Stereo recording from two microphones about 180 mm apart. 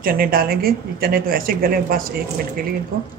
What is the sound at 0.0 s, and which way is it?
A woman's voice, 55° right (ahead or behind).